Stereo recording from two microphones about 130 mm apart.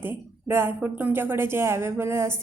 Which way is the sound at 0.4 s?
15° right (ahead or behind).